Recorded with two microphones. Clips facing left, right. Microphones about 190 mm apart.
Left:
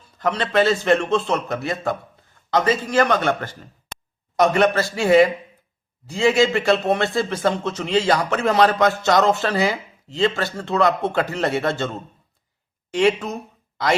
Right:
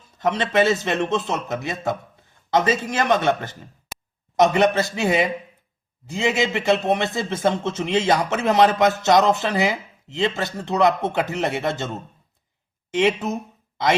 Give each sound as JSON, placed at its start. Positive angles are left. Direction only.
{"t": 0.2, "sound": "speech", "side_deg": -20}
{"t": 3.9, "sound": "a sound", "side_deg": -5}
{"t": 4.4, "sound": "speech", "side_deg": -20}
{"t": 12.9, "sound": "speech", "side_deg": -20}